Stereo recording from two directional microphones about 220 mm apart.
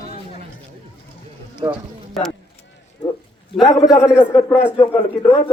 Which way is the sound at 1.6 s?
20° right (ahead or behind).